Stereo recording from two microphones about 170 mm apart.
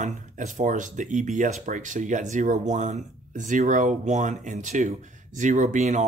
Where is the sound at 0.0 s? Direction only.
45° right (ahead or behind).